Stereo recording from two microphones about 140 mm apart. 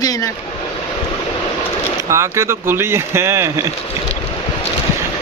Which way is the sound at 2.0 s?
20° right (ahead or behind).